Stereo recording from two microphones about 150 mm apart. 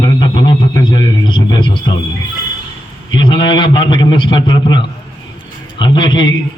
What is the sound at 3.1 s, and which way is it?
Speech, 30° left (ahead or behind).